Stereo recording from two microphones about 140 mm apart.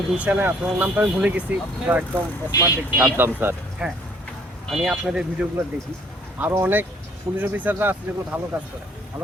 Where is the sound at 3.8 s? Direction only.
5° right (ahead or behind).